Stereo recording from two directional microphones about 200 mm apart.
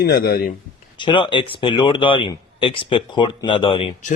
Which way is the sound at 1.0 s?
25° left (ahead or behind).